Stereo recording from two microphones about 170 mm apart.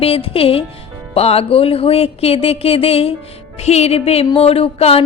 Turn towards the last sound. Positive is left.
turn(degrees=35)  # may be behind; listen again after turning